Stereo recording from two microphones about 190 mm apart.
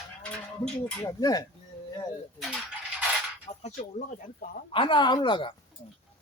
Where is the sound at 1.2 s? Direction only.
20° left (ahead or behind).